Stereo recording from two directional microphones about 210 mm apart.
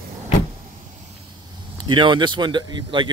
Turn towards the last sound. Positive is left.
turn(degrees=-20)  # may be behind; listen again after turning